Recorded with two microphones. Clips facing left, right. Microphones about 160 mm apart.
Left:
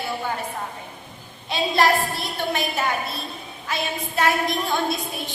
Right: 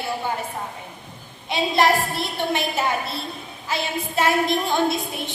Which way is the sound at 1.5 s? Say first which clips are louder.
Right 1 dB; 25° right (ahead or behind).